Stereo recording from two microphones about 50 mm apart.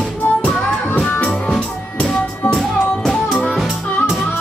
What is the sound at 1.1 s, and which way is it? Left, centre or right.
Music, left.